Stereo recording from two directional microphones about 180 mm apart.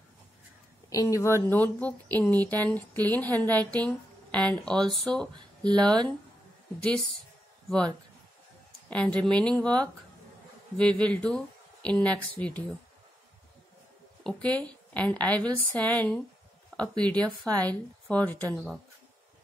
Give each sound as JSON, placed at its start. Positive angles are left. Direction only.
{"t": 0.8, "sound": "speech", "side_deg": 15}
{"t": 8.9, "sound": "speech", "side_deg": 5}
{"t": 14.2, "sound": "speech", "side_deg": 5}